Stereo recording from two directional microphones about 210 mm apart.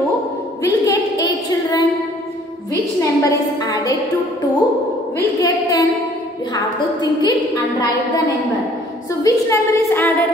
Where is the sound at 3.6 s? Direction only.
20° left (ahead or behind).